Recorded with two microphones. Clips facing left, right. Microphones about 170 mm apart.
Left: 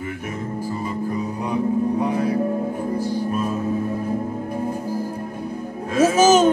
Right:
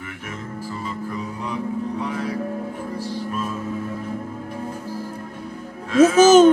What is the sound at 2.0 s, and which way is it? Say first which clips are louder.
Music: left 5 dB; 25° left (ahead or behind).